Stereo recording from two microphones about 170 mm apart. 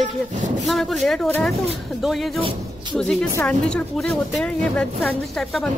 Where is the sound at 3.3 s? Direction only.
5° left (ahead or behind).